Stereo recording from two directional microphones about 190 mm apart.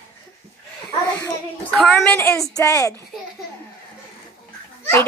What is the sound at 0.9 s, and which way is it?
A child's voice, 10° left (ahead or behind).